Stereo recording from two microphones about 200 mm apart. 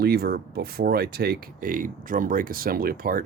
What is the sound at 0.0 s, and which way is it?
Speech, 50° right (ahead or behind).